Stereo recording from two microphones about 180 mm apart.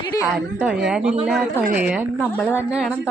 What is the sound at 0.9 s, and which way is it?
A woman's voice, 5° right (ahead or behind).